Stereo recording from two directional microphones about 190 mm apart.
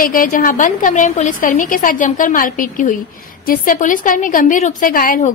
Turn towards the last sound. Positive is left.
turn(degrees=45)  # may be behind; listen again after turning